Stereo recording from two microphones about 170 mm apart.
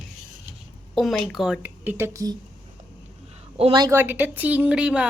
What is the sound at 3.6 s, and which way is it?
Speech, 35° right (ahead or behind).